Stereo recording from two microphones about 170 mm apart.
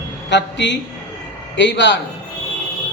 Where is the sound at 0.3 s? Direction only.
90° left.